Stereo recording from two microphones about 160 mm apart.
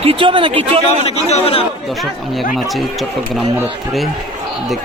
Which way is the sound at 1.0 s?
40° left (ahead or behind).